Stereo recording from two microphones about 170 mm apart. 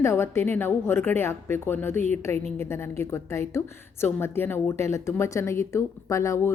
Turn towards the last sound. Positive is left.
turn(degrees=20)  # may be behind; listen again after turning